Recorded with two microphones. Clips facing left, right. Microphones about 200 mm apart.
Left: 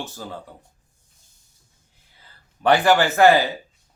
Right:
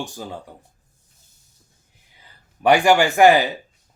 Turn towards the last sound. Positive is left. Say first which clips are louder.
# right 1 dB
turn(degrees=-15)  # may be behind; listen again after turning